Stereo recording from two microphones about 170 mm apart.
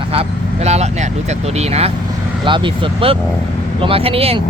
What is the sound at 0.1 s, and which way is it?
Speech, 35° right (ahead or behind).